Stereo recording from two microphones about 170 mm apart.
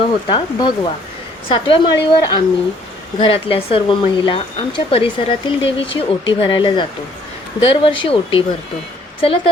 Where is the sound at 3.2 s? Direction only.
30° left (ahead or behind).